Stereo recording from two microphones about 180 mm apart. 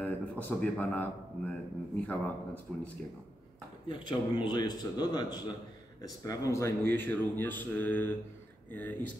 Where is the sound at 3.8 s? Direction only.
25° left (ahead or behind).